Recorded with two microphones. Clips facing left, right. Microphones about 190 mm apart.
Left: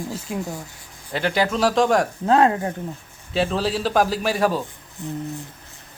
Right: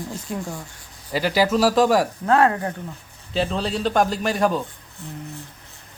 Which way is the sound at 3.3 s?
Centre (ahead or behind).